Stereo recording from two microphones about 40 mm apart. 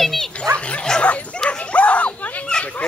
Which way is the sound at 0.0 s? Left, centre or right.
Centre.